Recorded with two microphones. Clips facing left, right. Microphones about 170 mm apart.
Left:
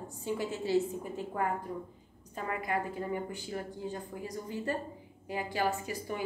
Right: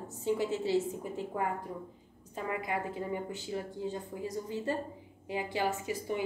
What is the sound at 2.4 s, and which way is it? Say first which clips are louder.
A woman's voice: left 1 dB; 20° right (ahead or behind).